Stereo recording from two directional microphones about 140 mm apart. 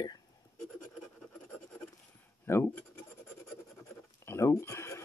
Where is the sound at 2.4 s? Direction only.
15° left (ahead or behind).